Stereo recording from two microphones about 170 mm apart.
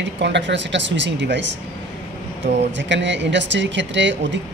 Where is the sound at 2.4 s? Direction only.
90° right.